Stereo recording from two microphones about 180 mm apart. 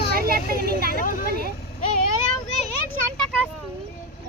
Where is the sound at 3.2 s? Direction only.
5° left (ahead or behind).